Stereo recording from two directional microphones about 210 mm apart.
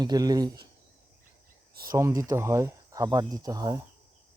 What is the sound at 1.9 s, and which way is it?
Speech, 15° right (ahead or behind).